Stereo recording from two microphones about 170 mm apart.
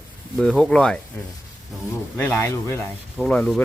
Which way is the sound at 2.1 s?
10° left (ahead or behind).